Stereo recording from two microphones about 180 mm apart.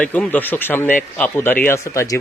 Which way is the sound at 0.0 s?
10° left (ahead or behind).